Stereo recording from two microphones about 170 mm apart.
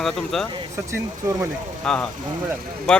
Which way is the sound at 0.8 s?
15° right (ahead or behind).